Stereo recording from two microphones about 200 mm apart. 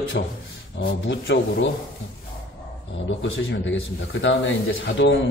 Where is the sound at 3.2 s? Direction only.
70° left (ahead or behind).